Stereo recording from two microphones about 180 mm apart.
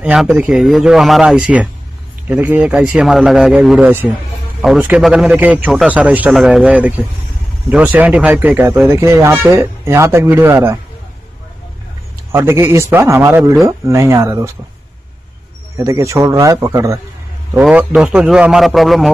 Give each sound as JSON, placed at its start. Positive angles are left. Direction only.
{"t": 0.0, "sound": "a man's voice", "side_deg": -5}
{"t": 12.3, "sound": "a man's voice", "side_deg": -15}
{"t": 15.7, "sound": "a man's voice", "side_deg": -15}